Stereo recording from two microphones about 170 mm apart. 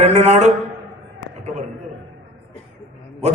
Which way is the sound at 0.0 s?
40° right (ahead or behind).